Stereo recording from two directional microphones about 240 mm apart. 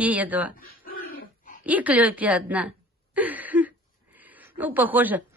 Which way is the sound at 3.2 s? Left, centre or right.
Centre.